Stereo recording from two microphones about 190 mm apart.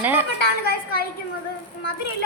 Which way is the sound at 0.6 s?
55° left (ahead or behind).